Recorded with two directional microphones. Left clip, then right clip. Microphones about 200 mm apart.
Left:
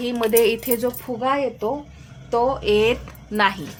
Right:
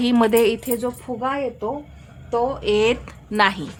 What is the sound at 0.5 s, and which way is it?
Speech, 5° right (ahead or behind).